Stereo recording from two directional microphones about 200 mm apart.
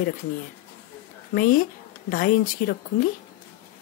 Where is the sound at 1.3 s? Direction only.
45° left (ahead or behind).